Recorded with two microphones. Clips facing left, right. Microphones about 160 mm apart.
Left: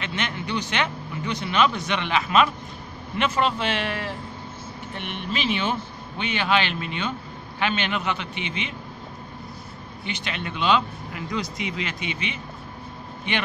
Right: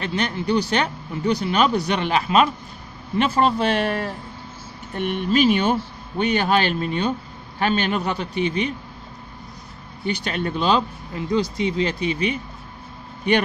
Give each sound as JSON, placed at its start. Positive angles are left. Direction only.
{"t": 0.0, "sound": "a man's voice", "side_deg": -35}
{"t": 10.0, "sound": "a man's voice", "side_deg": -40}